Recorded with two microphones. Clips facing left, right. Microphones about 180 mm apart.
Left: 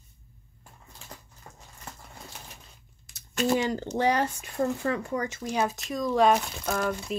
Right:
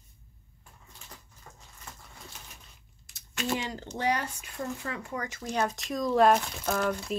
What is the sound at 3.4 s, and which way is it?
Speech, 40° left (ahead or behind).